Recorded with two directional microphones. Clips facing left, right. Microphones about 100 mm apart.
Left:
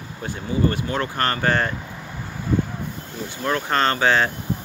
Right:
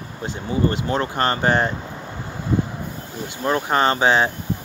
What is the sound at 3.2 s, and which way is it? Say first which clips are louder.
Speech: right 2 dB; 20° right (ahead or behind).